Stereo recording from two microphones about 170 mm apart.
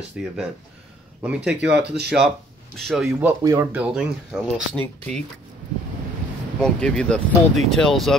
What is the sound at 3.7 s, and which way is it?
Speech, 5° right (ahead or behind).